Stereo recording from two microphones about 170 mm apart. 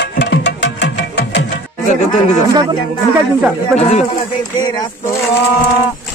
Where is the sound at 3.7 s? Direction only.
40° left (ahead or behind).